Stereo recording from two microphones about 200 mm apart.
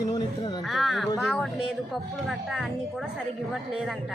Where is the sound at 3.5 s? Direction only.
Centre (ahead or behind).